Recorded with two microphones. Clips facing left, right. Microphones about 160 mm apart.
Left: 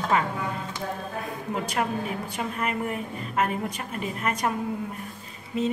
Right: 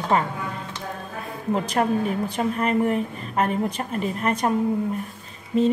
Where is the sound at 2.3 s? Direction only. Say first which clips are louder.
Right 6 dB; 35° right (ahead or behind).